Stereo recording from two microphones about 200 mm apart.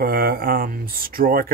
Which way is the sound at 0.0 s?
50° right (ahead or behind).